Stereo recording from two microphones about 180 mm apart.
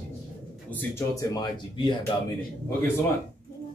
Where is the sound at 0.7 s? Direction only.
10° left (ahead or behind).